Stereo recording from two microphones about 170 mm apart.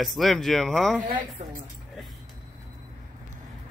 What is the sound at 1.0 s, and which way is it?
Speech, 55° right (ahead or behind).